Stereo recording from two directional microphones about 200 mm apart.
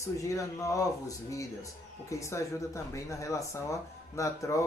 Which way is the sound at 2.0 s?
15° left (ahead or behind).